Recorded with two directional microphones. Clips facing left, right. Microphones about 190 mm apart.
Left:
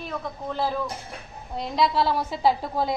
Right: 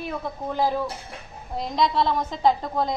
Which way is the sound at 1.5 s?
Centre (ahead or behind).